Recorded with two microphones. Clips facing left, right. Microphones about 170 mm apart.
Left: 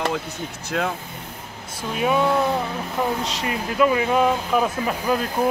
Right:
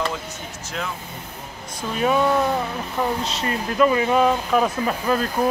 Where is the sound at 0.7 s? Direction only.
60° left (ahead or behind).